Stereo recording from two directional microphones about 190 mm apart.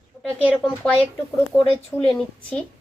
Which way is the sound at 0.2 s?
Centre (ahead or behind).